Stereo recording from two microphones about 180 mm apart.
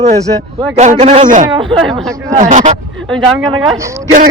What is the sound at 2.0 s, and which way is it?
Speech, 20° right (ahead or behind).